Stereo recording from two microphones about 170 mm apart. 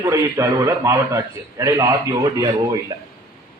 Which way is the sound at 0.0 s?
20° right (ahead or behind).